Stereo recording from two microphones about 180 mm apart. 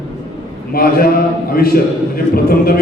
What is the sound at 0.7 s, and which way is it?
A man's voice, 55° left (ahead or behind).